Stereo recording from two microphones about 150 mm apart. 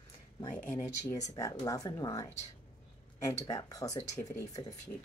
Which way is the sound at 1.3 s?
25° left (ahead or behind).